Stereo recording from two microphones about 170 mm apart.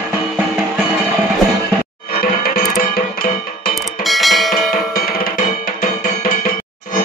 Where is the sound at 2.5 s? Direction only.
60° left (ahead or behind).